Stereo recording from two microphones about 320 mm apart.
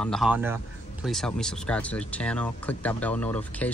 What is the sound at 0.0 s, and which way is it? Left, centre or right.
Speech, centre.